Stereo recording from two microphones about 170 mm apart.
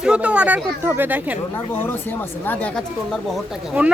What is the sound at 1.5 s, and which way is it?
Speech, 15° left (ahead or behind).